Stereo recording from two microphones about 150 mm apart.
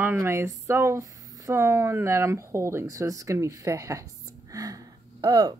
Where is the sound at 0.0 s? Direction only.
15° right (ahead or behind).